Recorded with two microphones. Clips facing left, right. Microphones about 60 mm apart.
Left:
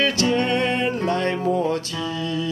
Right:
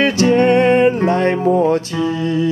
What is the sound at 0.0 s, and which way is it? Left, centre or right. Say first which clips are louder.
Music: right 8 dB; right.